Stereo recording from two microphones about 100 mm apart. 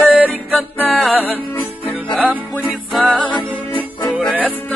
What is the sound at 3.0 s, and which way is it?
Music, 10° left (ahead or behind).